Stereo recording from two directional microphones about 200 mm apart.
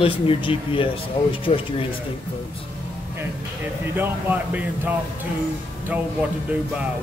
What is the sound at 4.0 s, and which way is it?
Speech, 10° right (ahead or behind).